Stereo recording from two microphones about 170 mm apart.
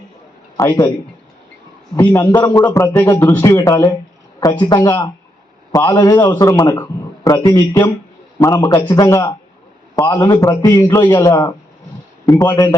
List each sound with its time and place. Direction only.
0.5 s a man's voice: 25° left (ahead or behind)
2.0 s a man's voice: 15° left (ahead or behind)